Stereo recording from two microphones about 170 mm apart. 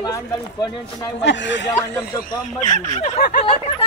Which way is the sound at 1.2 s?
90° left.